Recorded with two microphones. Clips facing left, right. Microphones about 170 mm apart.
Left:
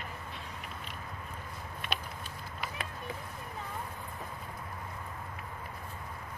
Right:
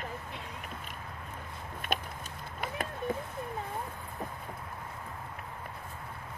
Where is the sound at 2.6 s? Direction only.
50° right (ahead or behind).